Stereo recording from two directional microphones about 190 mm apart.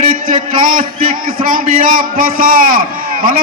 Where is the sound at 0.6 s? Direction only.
50° right (ahead or behind).